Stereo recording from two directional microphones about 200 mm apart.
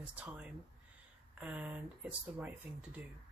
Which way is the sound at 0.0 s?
5° right (ahead or behind).